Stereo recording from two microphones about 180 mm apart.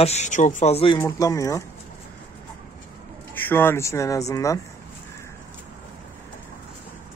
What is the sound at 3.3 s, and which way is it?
Speech, 10° left (ahead or behind).